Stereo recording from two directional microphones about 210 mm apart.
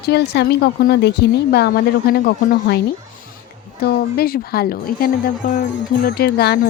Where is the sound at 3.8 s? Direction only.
50° left (ahead or behind).